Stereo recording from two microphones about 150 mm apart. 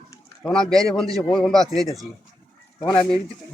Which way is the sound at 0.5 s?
5° left (ahead or behind).